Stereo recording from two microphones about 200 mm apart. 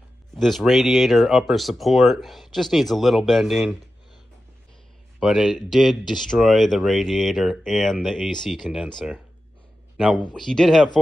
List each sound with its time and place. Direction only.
0.3 s speech: centre (ahead or behind)
5.2 s speech: centre (ahead or behind)